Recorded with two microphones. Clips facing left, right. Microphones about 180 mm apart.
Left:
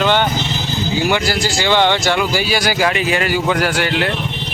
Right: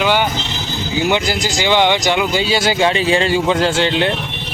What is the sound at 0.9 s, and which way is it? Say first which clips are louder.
Speech: right 1 dB; 20° right (ahead or behind).